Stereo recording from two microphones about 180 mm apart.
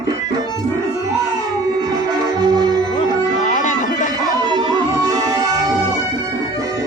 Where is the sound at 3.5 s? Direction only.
45° left (ahead or behind).